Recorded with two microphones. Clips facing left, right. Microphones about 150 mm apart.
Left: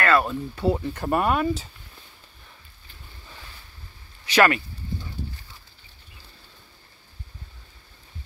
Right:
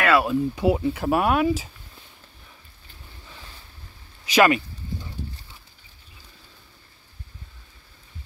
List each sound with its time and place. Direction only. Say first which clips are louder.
0.0 s speech: right 2 dB; 5° right (ahead or behind)
4.3 s speech: right 1 dB; 10° right (ahead or behind)